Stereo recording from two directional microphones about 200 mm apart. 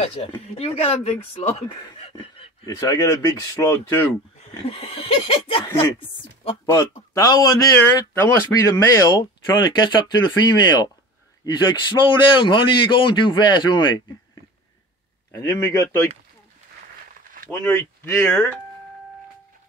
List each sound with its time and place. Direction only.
0.0 s speech: 30° left (ahead or behind)
2.0 s a sound: 30° left (ahead or behind)
2.8 s speech: 15° left (ahead or behind)
4.4 s speech: 30° left (ahead or behind)
15.3 s speech: 15° left (ahead or behind)
17.5 s speech: 10° left (ahead or behind)